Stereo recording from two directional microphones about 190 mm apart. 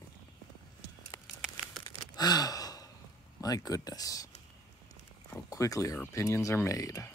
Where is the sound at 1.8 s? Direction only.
20° left (ahead or behind).